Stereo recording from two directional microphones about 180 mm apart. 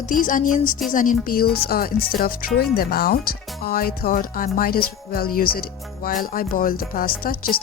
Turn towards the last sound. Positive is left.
turn(degrees=55)  # may be behind; listen again after turning